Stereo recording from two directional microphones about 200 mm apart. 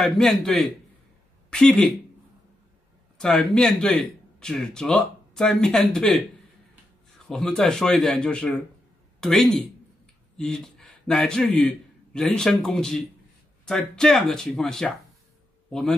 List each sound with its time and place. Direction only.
0.0 s speech: centre (ahead or behind)
3.2 s speech: 5° left (ahead or behind)
7.2 s a man's voice: centre (ahead or behind)